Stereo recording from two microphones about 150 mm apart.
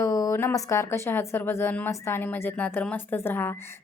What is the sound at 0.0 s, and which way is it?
A woman's voice, 20° left (ahead or behind).